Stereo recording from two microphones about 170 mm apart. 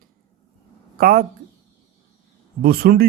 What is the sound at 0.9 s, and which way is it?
Speech, 60° right (ahead or behind).